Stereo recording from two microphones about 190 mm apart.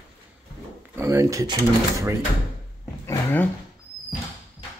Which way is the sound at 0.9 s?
15° right (ahead or behind).